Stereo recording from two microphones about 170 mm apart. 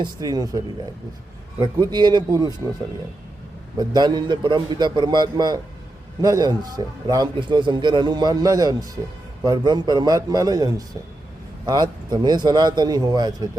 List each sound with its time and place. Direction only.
0.0 s a man's voice: 20° right (ahead or behind)
3.8 s a man's voice: 25° right (ahead or behind)